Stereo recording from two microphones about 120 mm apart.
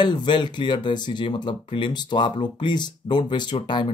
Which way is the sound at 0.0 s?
40° left (ahead or behind).